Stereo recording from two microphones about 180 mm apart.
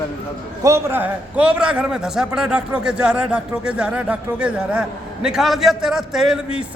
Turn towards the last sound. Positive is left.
turn(degrees=-5)  # may be behind; listen again after turning